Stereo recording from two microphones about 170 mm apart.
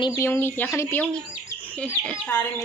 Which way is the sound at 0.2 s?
15° left (ahead or behind).